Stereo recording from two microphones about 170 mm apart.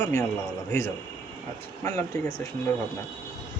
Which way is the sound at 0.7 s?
15° left (ahead or behind).